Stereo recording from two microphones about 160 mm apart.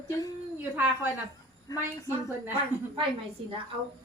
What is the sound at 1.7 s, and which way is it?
Speech, 25° left (ahead or behind).